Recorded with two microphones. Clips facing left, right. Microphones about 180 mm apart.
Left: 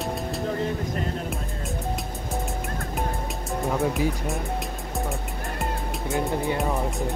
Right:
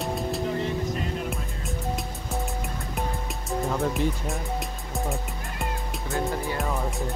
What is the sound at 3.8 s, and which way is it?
Speech, centre (ahead or behind).